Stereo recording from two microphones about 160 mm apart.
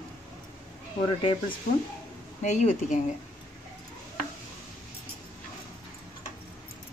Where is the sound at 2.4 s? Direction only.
50° left (ahead or behind).